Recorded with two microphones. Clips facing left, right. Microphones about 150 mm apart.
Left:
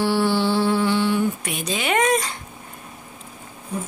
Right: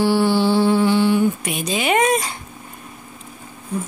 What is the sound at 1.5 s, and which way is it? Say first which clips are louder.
Speech: right 4 dB; 15° right (ahead or behind).